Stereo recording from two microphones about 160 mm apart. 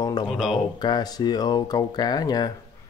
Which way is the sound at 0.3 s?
Centre (ahead or behind).